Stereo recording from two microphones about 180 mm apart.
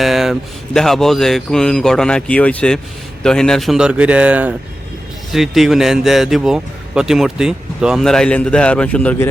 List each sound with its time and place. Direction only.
0.0 s speech: centre (ahead or behind)